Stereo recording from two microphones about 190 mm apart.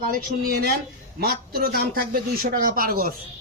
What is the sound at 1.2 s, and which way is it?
Speech, 55° right (ahead or behind).